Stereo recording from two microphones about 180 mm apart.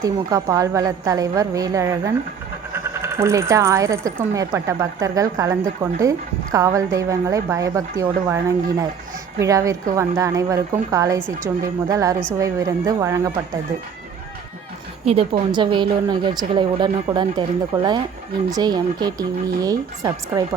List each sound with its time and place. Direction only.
0.0 s a woman's voice: 20° right (ahead or behind)
15.0 s a woman's voice: 35° right (ahead or behind)
18.5 s a woman's voice: 25° right (ahead or behind)